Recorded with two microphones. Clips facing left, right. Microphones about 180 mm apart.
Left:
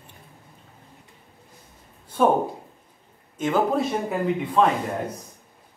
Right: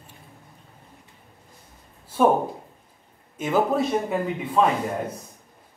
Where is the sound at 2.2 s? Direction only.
5° right (ahead or behind).